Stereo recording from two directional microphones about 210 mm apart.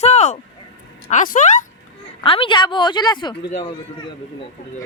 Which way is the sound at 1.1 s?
40° left (ahead or behind).